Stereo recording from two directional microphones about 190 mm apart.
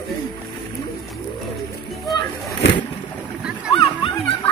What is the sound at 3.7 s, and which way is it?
Dog, 25° left (ahead or behind).